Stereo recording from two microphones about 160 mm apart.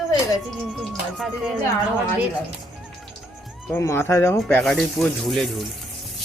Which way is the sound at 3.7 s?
15° left (ahead or behind).